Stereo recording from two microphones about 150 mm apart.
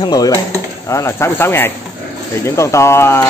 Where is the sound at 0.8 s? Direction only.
20° left (ahead or behind).